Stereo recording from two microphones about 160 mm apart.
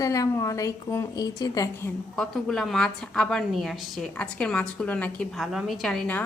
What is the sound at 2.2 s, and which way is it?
A woman's voice, 5° left (ahead or behind).